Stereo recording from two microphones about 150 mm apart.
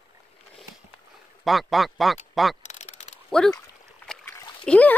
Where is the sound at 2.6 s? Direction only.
55° left (ahead or behind).